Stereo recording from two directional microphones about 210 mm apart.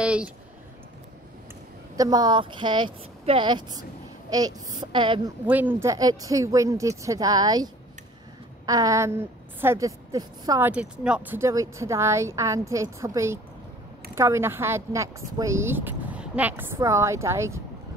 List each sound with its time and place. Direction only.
0.0 s a sound: 5° right (ahead or behind)
2.0 s speech: 20° right (ahead or behind)
5.5 s a woman's voice: 10° right (ahead or behind)
10.7 s speech: 5° right (ahead or behind)